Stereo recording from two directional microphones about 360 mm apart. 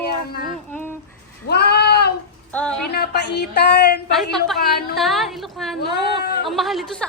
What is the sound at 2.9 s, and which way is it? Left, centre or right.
Speech, left.